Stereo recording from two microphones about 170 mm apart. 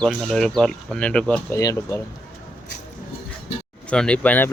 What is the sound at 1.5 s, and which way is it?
Speech, 20° left (ahead or behind).